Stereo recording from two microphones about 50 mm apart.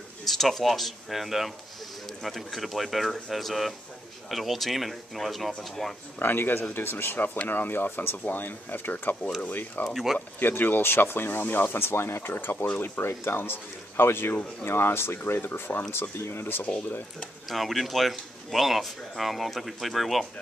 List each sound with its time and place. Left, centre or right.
0.2 s speech: centre
6.1 s speech: left
9.8 s speech: centre
10.4 s speech: left
17.5 s speech: centre